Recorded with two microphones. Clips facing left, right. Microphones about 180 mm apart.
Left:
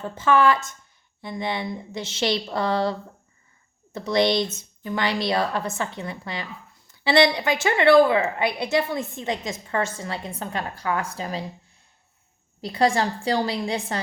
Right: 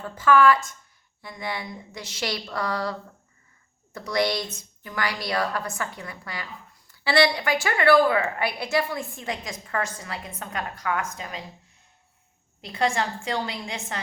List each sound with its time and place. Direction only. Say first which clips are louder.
0.0 s a woman's voice: even; 25° left (ahead or behind)
12.6 s a woman's voice: left 4 dB; 35° left (ahead or behind)